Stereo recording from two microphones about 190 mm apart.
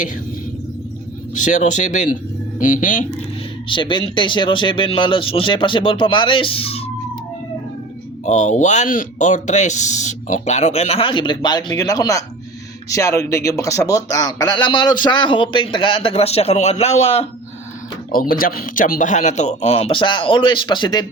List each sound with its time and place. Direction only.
1.3 s speech: 40° left (ahead or behind)
3.7 s speech: 25° left (ahead or behind)
8.2 s speech: 40° left (ahead or behind)
18.1 s speech: 50° left (ahead or behind); by 21.1 s 20° left (ahead or behind)